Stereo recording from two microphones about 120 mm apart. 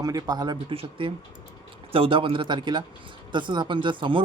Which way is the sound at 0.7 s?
50° right (ahead or behind).